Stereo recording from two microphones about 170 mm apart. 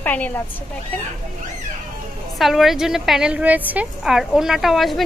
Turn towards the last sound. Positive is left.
turn(degrees=0)  # may be behind; listen again after turning